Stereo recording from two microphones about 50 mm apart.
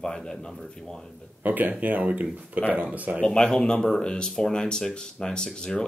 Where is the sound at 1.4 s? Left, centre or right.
Right.